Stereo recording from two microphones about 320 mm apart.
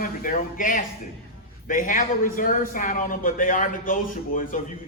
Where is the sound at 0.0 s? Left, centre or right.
Left.